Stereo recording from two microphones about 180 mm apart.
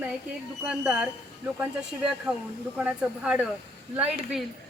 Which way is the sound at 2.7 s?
5° right (ahead or behind).